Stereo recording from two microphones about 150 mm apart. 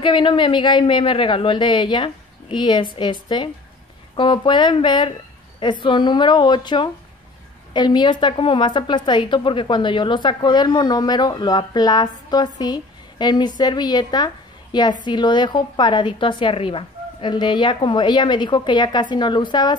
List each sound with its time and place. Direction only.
0.0 s a woman's voice: 35° left (ahead or behind)